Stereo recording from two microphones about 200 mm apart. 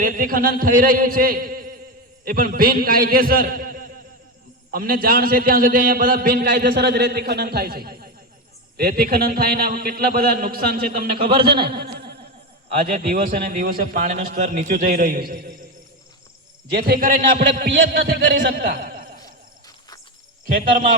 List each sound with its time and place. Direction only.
0.0 s a man's voice: 45° right (ahead or behind)
12.6 s a man's voice: 45° right (ahead or behind)
16.7 s a man's voice: 50° right (ahead or behind)
19.2 s a sound: 20° left (ahead or behind)
20.5 s a man's voice: 45° right (ahead or behind)